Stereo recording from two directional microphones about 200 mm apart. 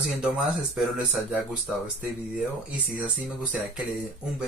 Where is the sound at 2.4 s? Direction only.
5° right (ahead or behind).